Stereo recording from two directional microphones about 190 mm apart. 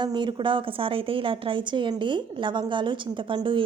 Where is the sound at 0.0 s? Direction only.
25° right (ahead or behind).